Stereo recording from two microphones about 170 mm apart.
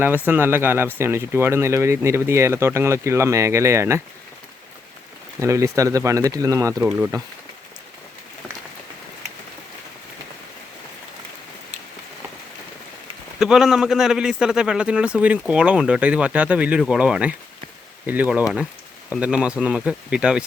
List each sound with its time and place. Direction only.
0.0 s speech: 10° right (ahead or behind)
5.4 s speech: 20° right (ahead or behind)
13.4 s speech: centre (ahead or behind)